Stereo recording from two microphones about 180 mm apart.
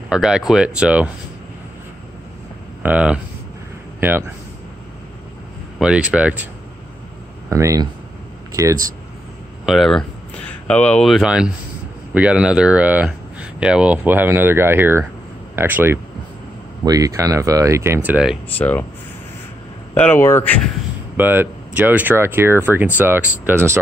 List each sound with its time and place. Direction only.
0.1 s speech: 5° right (ahead or behind)
2.8 s speech: 5° right (ahead or behind)
5.8 s speech: 5° right (ahead or behind)
9.7 s speech: centre (ahead or behind)
18.6 s speech: 10° left (ahead or behind)
19.9 s speech: 10° left (ahead or behind)
21.2 s speech: 10° right (ahead or behind)